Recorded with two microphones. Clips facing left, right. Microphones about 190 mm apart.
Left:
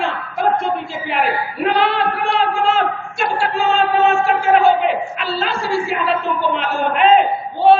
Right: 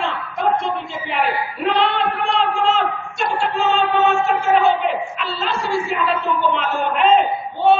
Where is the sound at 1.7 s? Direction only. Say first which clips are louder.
Left 1 dB; 5° left (ahead or behind).